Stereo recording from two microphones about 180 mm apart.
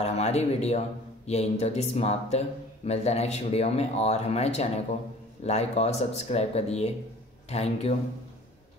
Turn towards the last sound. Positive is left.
turn(degrees=35)  # may be behind; listen again after turning